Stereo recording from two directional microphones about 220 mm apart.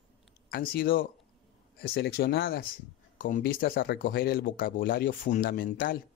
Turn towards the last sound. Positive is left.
turn(degrees=40)  # may be behind; listen again after turning